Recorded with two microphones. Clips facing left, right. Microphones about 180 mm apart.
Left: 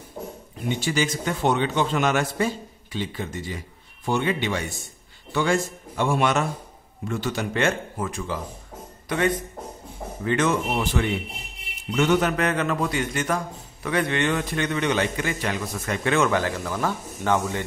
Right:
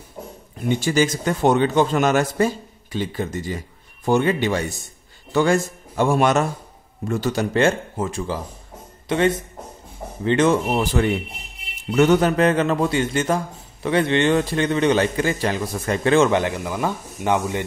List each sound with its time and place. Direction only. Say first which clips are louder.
0.7 s a man's voice: right 5 dB; 45° right (ahead or behind); by 17.6 s 15° right (ahead or behind)